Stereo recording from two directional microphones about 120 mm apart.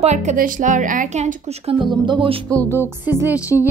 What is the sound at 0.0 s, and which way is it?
Speech, 75° right (ahead or behind).